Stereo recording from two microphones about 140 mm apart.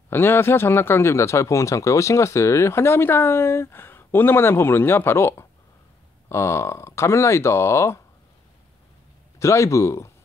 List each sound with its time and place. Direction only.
0.1 s speech: 15° left (ahead or behind)
9.4 s speech: 20° left (ahead or behind)